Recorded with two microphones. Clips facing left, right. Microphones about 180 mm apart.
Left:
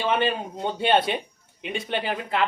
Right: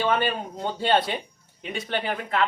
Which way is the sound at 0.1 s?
25° left (ahead or behind).